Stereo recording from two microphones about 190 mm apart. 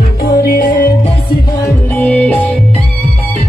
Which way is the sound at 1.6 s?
10° left (ahead or behind).